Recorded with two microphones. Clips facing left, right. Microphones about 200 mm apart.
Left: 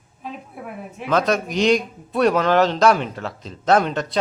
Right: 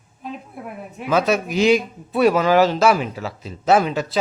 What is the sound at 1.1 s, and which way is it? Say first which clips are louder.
Speech: right 1 dB; 5° right (ahead or behind).